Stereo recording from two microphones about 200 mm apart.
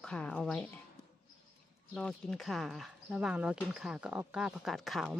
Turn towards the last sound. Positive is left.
turn(degrees=0)  # may be behind; listen again after turning